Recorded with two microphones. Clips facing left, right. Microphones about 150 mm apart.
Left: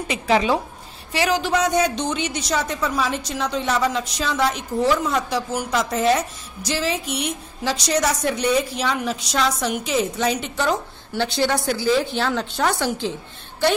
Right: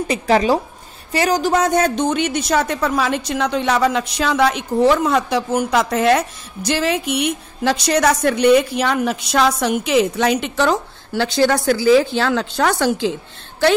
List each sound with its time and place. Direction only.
0.1 s speech: 40° right (ahead or behind); by 13.1 s 90° right